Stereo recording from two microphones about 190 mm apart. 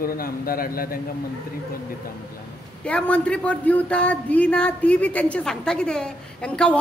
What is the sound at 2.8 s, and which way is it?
A woman's voice, 5° left (ahead or behind).